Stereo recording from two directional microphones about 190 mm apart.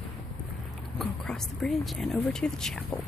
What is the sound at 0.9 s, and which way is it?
Speech, 5° left (ahead or behind).